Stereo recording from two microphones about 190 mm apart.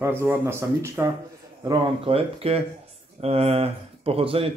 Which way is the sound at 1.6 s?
30° right (ahead or behind).